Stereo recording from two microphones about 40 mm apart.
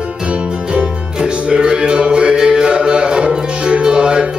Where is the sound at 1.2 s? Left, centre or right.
Right.